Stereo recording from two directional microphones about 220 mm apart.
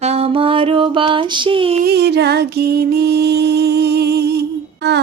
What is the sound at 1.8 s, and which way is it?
Music, 50° right (ahead or behind).